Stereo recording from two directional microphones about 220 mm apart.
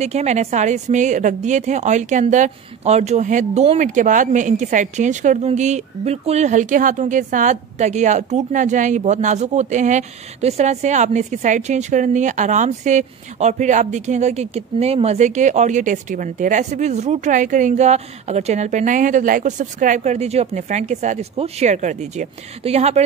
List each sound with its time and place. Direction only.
0.0 s a woman's voice: 30° right (ahead or behind)